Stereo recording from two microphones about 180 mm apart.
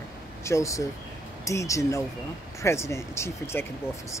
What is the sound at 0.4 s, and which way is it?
Speech, 15° left (ahead or behind).